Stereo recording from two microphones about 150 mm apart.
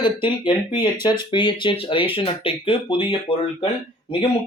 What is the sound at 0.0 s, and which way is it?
Speech, 30° left (ahead or behind).